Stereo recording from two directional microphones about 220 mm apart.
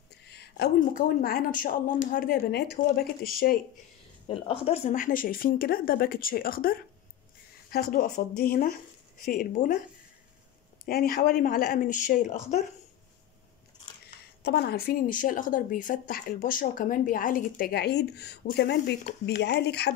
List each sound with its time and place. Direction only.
0.3 s speech: 50° left (ahead or behind)
4.3 s speech: 25° left (ahead or behind)
10.9 s speech: 40° left (ahead or behind)
14.4 s speech: 45° left (ahead or behind)